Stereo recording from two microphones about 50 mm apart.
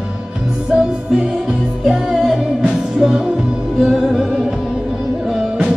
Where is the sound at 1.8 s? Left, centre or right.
Centre.